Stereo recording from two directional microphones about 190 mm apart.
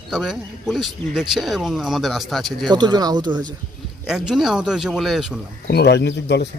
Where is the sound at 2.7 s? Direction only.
20° right (ahead or behind).